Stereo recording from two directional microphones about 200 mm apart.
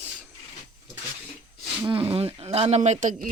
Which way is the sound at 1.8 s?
25° right (ahead or behind).